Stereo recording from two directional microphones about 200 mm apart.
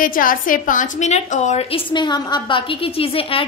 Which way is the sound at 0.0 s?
45° left (ahead or behind).